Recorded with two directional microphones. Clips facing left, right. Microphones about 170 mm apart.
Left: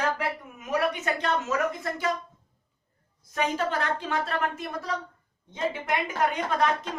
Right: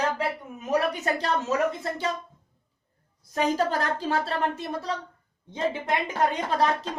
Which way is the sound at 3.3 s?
35° right (ahead or behind).